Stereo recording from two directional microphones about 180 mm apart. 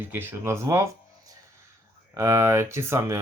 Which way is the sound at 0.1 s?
10° right (ahead or behind).